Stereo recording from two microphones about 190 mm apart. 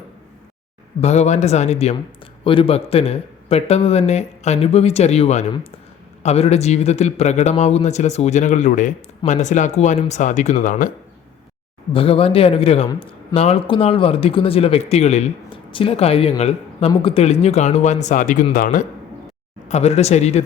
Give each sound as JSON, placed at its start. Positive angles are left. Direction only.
{"t": 1.0, "sound": "a man's voice", "side_deg": 35}
{"t": 11.9, "sound": "a man's voice", "side_deg": 30}
{"t": 19.6, "sound": "a man's voice", "side_deg": 35}